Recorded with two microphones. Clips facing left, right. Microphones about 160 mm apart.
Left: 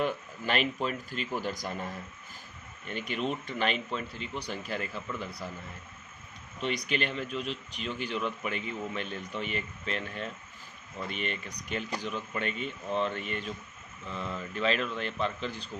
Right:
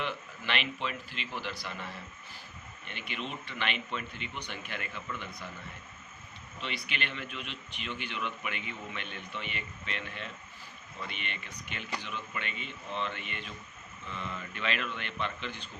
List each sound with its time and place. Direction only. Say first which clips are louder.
0.0 s a man's voice: left 6 dB; 40° left (ahead or behind)
6.6 s speech: left 7 dB; 45° left (ahead or behind)
14.5 s speech: left 7 dB; 35° left (ahead or behind)